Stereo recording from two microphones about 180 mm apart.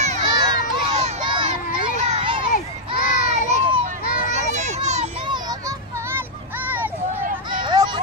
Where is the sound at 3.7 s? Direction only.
35° right (ahead or behind).